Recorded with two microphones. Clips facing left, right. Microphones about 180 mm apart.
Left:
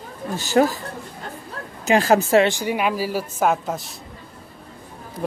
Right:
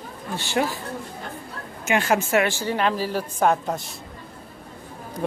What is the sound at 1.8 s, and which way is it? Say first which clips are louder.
Speech: left 5 dB; 35° left (ahead or behind).